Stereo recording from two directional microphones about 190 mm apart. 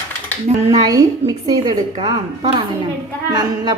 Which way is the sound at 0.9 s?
20° right (ahead or behind).